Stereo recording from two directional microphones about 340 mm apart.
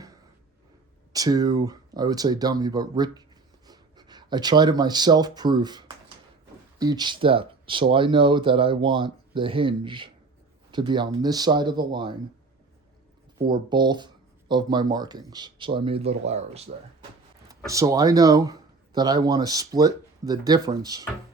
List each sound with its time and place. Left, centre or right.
1.1 s speech: centre
13.5 s speech: centre